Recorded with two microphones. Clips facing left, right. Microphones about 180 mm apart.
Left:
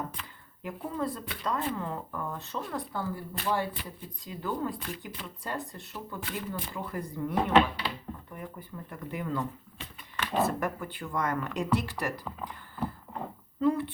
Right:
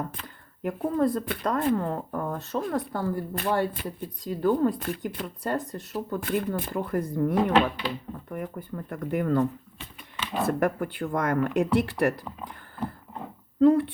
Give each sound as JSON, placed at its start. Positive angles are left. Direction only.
{"t": 0.6, "sound": "speech", "side_deg": -50}
{"t": 10.6, "sound": "speech", "side_deg": -55}
{"t": 13.6, "sound": "speech", "side_deg": -55}